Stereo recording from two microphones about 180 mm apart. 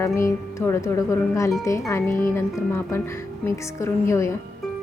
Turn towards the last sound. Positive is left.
turn(degrees=15)  # may be behind; listen again after turning